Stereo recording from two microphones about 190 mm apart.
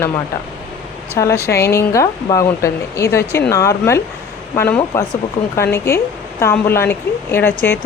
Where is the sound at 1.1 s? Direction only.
15° left (ahead or behind).